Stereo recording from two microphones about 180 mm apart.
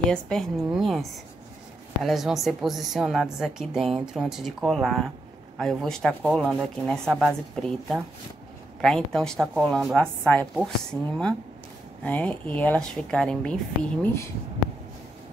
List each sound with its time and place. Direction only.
0.1 s a woman's voice: 5° left (ahead or behind)
2.0 s a woman's voice: centre (ahead or behind)
14.0 s speech: 15° left (ahead or behind)